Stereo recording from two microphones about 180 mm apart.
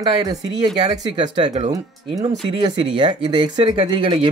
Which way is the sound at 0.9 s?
30° right (ahead or behind).